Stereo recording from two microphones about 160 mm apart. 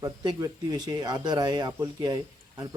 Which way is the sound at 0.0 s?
25° right (ahead or behind).